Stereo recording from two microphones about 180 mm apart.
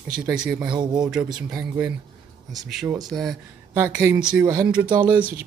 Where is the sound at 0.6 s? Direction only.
25° right (ahead or behind).